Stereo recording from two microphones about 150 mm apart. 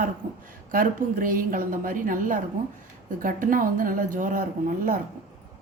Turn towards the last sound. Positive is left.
turn(degrees=-70)  # may be behind; listen again after turning